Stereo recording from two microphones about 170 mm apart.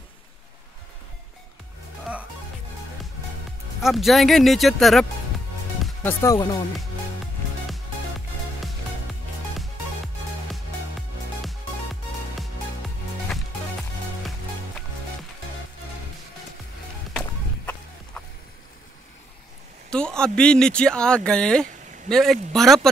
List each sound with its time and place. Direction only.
3.8 s speech: centre (ahead or behind)
6.0 s speech: 20° left (ahead or behind)
10.5 s music: centre (ahead or behind)
17.1 s a sound: 5° left (ahead or behind)
19.9 s speech: 5° left (ahead or behind)